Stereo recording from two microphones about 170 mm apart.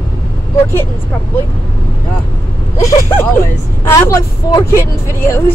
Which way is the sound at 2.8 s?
20° left (ahead or behind).